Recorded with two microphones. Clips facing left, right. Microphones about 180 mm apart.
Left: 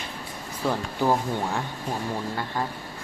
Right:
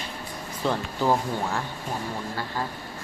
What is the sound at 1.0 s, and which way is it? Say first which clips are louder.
Speech: left 1 dB; 15° left (ahead or behind).